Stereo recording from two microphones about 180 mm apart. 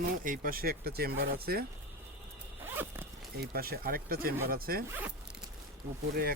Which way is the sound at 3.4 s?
55° right (ahead or behind).